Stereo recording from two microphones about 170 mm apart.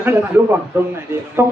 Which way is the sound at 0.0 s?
10° right (ahead or behind).